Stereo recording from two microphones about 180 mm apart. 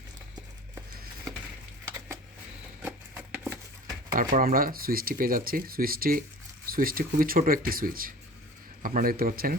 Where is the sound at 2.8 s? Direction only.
10° right (ahead or behind).